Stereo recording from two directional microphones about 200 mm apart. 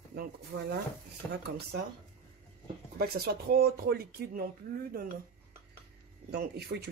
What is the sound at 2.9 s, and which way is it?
Speech, 50° right (ahead or behind).